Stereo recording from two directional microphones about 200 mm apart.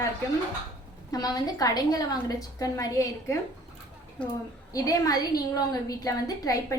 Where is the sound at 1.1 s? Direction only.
20° left (ahead or behind).